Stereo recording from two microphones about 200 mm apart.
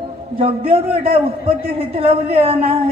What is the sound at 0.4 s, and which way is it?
A woman's voice, 30° right (ahead or behind).